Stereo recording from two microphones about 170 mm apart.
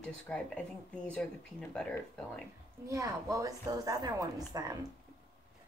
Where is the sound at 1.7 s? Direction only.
5° left (ahead or behind).